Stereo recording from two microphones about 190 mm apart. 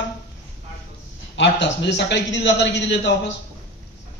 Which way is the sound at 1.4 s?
65° left (ahead or behind).